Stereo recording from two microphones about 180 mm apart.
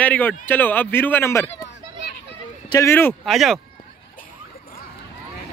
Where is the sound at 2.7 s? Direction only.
15° left (ahead or behind).